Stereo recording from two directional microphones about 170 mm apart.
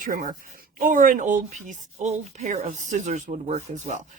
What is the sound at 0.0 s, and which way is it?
Speech, 50° right (ahead or behind).